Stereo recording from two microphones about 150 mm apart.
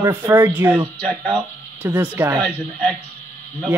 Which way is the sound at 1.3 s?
10° right (ahead or behind).